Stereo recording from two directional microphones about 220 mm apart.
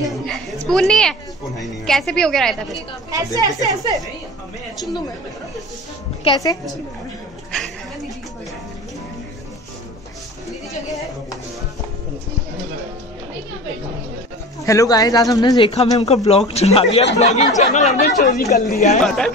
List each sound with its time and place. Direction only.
0.0 s a sound: centre (ahead or behind)
1.6 s a woman's voice: centre (ahead or behind)
3.1 s a woman's voice: 15° right (ahead or behind)
6.2 s speech: 15° left (ahead or behind)
14.6 s speech: 15° left (ahead or behind); by 18.9 s 30° left (ahead or behind)
19.0 s a woman's voice: 5° left (ahead or behind)